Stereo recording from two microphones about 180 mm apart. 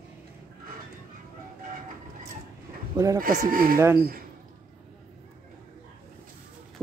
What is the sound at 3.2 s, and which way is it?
Speech, 50° right (ahead or behind).